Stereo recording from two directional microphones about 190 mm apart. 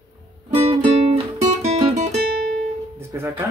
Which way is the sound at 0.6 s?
30° right (ahead or behind).